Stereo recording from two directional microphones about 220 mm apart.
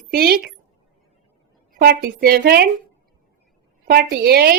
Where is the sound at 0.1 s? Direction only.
45° right (ahead or behind).